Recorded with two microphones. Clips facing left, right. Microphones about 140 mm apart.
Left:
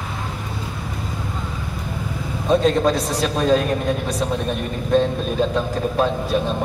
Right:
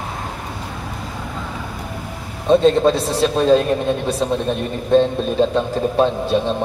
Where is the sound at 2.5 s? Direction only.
30° right (ahead or behind).